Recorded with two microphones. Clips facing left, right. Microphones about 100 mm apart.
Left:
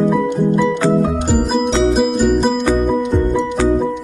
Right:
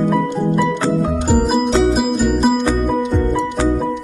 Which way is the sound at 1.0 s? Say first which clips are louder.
Even; 5° right (ahead or behind).